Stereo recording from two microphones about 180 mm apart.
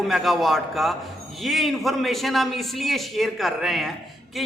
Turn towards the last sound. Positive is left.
turn(degrees=0)  # may be behind; listen again after turning